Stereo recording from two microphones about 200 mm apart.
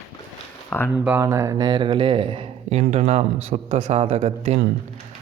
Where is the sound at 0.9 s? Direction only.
10° right (ahead or behind).